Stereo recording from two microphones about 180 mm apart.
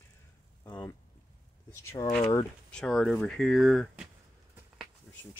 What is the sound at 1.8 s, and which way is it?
Speech, 20° left (ahead or behind).